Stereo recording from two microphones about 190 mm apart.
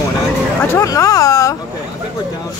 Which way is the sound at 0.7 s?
15° left (ahead or behind).